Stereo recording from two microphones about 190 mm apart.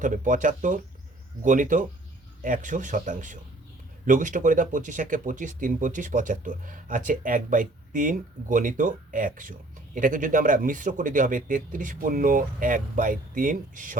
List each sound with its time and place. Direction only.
0.0 s speech: 45° right (ahead or behind)